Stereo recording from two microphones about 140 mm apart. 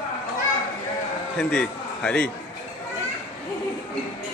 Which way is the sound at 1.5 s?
5° left (ahead or behind).